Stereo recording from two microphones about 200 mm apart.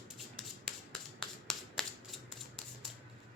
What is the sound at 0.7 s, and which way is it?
Finger snapping, centre (ahead or behind).